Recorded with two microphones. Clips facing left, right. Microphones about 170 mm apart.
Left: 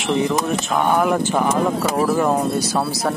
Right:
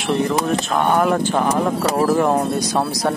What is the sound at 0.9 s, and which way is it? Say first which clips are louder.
Speech: right 1 dB; 10° left (ahead or behind).